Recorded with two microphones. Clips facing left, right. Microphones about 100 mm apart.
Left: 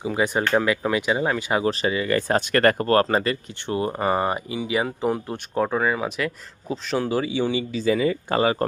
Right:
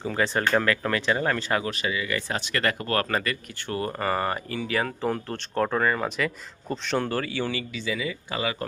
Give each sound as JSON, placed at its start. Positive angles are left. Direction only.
{"t": 0.0, "sound": "speech", "side_deg": 10}
{"t": 1.6, "sound": "speech", "side_deg": 35}
{"t": 7.7, "sound": "speech", "side_deg": 40}